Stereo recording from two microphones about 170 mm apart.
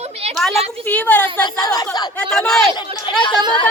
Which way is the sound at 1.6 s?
20° left (ahead or behind).